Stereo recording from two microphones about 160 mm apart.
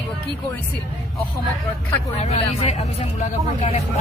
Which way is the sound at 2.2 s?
45° left (ahead or behind).